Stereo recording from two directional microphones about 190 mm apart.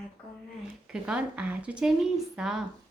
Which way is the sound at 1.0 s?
5° right (ahead or behind).